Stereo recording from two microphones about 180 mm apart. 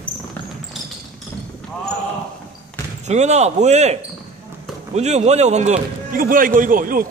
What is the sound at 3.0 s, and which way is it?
Speech, 40° right (ahead or behind).